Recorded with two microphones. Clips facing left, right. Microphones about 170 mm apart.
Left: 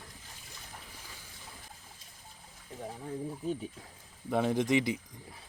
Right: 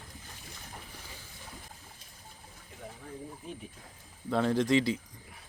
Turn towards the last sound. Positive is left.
turn(degrees=20)  # may be behind; listen again after turning